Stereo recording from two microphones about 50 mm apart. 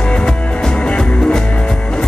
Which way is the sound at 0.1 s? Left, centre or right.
Left.